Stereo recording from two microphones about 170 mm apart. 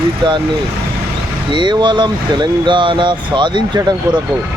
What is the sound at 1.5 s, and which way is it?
Speech, 25° right (ahead or behind).